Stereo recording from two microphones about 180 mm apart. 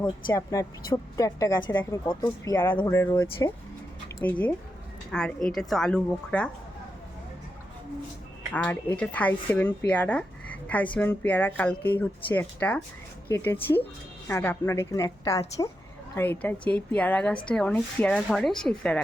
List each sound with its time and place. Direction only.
0.5 s a woman's voice: 15° left (ahead or behind)
8.5 s a woman's voice: 10° left (ahead or behind)